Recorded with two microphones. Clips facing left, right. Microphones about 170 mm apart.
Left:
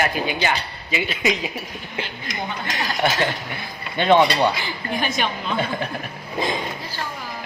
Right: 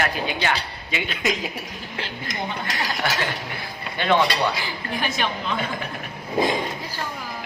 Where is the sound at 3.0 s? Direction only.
20° left (ahead or behind).